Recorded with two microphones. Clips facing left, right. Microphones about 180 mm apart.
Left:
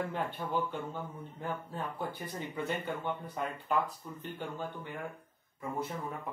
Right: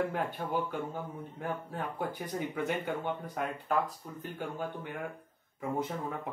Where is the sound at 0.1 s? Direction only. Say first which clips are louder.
Right 1 dB; 10° right (ahead or behind).